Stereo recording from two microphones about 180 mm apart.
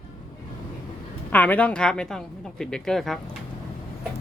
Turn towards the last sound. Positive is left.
turn(degrees=0)  # may be behind; listen again after turning